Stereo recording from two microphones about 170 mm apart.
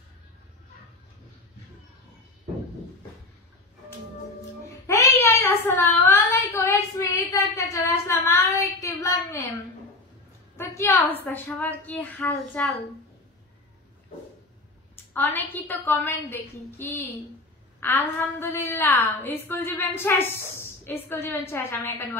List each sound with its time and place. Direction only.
4.8 s a sound: 15° left (ahead or behind)
10.6 s a woman's voice: 15° left (ahead or behind)
15.1 s a woman's voice: 10° left (ahead or behind)